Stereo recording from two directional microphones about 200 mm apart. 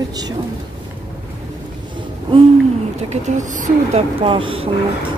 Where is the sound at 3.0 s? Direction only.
35° right (ahead or behind).